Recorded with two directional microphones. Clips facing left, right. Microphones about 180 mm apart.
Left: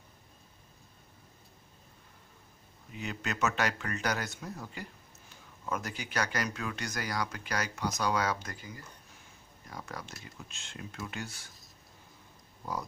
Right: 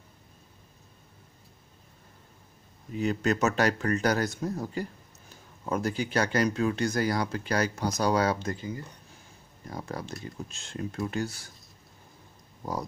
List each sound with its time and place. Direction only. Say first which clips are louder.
2.9 s speech: right 11 dB; 40° right (ahead or behind)